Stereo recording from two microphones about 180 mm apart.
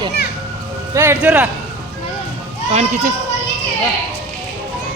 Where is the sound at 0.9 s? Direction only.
15° right (ahead or behind).